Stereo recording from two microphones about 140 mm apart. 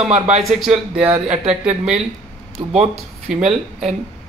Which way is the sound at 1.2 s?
50° right (ahead or behind).